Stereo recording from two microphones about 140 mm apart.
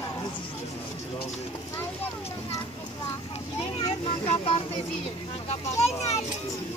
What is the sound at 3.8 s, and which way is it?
Vehicle, 45° left (ahead or behind).